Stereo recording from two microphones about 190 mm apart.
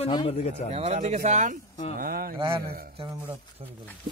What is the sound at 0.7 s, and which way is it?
Speech, 35° right (ahead or behind).